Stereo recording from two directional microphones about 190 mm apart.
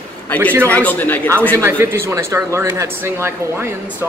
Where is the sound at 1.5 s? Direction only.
15° right (ahead or behind).